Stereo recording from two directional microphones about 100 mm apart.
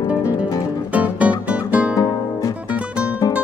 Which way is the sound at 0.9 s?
15° right (ahead or behind).